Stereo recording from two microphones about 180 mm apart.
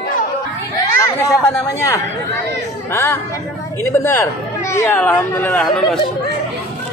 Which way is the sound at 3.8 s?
15° left (ahead or behind).